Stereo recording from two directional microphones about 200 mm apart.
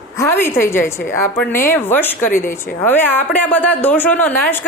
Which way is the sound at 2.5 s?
10° left (ahead or behind).